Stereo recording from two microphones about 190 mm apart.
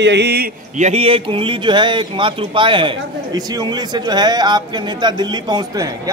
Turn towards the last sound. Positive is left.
turn(degrees=-20)  # may be behind; listen again after turning